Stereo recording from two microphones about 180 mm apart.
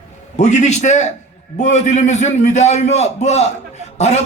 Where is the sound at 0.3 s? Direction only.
40° left (ahead or behind).